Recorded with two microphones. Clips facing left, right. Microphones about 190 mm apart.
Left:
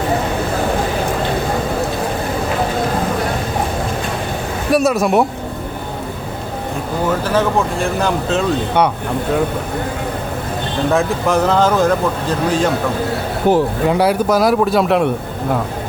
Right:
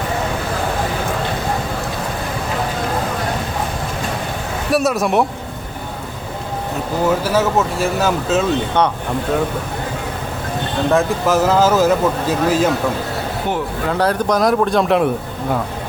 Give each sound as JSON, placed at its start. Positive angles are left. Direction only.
{"t": 4.7, "sound": "speech", "side_deg": 0}
{"t": 7.1, "sound": "speech", "side_deg": -10}
{"t": 10.9, "sound": "speech", "side_deg": 0}
{"t": 13.5, "sound": "speech", "side_deg": 35}
{"t": 13.8, "sound": "speech", "side_deg": 10}